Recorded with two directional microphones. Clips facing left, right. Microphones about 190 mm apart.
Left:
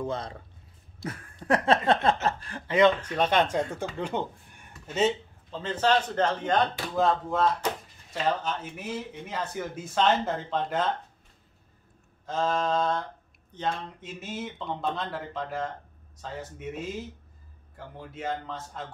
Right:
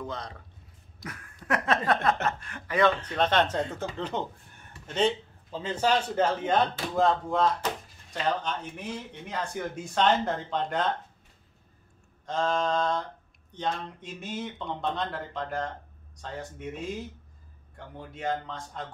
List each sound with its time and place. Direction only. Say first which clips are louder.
0.0 s a sound: left 5 dB; 30° left (ahead or behind)
2.2 s speech: left 2 dB; 35° left (ahead or behind)
2.8 s speech: left 2 dB; 10° left (ahead or behind)
5.5 s a man's voice: left 1 dB; 10° right (ahead or behind)
12.3 s speech: even; 5° left (ahead or behind)